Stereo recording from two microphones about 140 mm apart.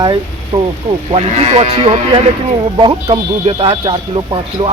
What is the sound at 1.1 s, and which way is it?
Speech, 45° right (ahead or behind).